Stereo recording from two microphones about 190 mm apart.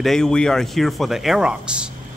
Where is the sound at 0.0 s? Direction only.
5° left (ahead or behind).